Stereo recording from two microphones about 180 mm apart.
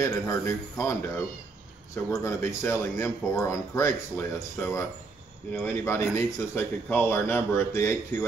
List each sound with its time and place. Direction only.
0.0 s speech: 15° left (ahead or behind)